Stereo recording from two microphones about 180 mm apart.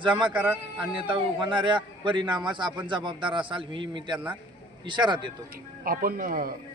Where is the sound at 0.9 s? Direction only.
30° right (ahead or behind).